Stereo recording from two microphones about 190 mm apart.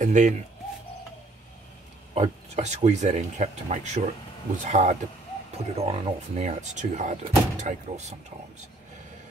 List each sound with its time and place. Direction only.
0.0 s speech: 40° right (ahead or behind)
2.1 s speech: 35° right (ahead or behind)